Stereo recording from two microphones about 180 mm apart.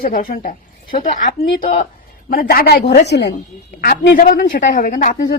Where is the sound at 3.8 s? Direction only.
55° left (ahead or behind).